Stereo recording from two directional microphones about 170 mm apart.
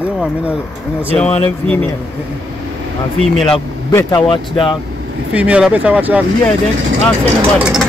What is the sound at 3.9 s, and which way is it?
Speech, 20° left (ahead or behind).